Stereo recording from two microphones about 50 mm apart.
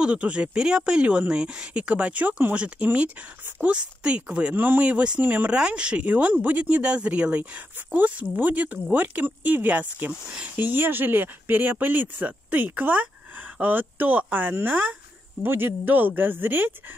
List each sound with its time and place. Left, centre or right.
0.0 s speech: right
5.2 s speech: right
5.5 s speech: right